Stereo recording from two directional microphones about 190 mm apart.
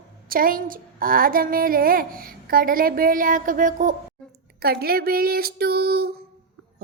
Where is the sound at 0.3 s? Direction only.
50° right (ahead or behind).